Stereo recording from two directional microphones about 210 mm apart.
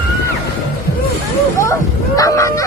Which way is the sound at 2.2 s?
15° left (ahead or behind).